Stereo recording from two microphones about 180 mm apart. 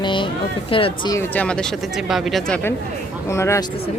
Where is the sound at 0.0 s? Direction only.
25° left (ahead or behind).